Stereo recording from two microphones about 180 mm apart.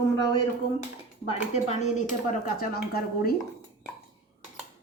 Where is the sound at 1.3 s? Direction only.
40° left (ahead or behind); by 3.3 s 55° left (ahead or behind).